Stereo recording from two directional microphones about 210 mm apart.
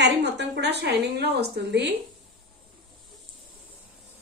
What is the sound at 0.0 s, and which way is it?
A woman's voice, 55° right (ahead or behind).